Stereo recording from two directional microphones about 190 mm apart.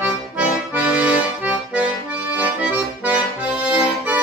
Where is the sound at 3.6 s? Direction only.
10° right (ahead or behind).